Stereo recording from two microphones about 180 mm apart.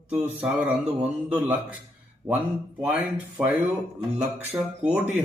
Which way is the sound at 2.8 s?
10° right (ahead or behind).